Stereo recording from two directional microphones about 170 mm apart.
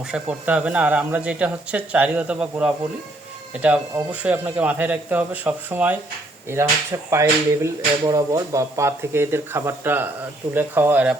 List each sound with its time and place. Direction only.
0.1 s speech: 5° right (ahead or behind)
7.1 s speech: 15° right (ahead or behind)